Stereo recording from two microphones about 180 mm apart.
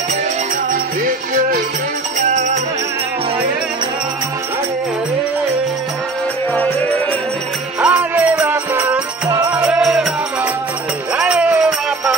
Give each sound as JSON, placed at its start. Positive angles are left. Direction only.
{"t": 1.0, "sound": "music", "side_deg": -50}
{"t": 7.8, "sound": "music", "side_deg": -10}
{"t": 11.1, "sound": "music", "side_deg": -5}